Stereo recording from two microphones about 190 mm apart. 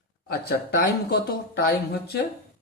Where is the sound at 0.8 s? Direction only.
55° left (ahead or behind).